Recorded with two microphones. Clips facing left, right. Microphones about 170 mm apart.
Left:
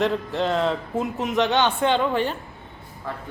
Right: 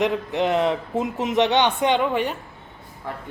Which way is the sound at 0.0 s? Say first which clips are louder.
Right 1 dB; 15° right (ahead or behind).